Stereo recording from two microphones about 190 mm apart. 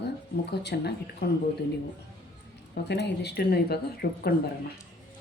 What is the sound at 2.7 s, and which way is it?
A woman's voice, 60° left (ahead or behind).